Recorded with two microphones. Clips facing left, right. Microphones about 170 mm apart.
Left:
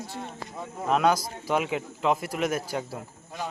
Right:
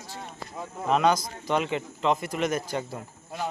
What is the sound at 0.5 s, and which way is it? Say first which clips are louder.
Speech: right 1 dB; centre (ahead or behind).